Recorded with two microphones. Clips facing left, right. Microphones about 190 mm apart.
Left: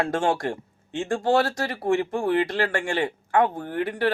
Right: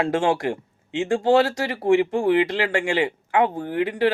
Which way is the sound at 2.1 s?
25° right (ahead or behind).